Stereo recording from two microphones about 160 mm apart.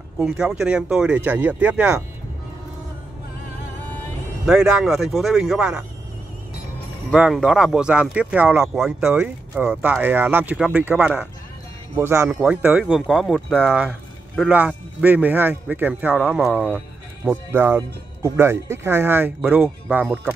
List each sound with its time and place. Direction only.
0.2 s speech: 5° right (ahead or behind)
4.5 s speech: 5° right (ahead or behind)
7.1 s speech: 5° right (ahead or behind)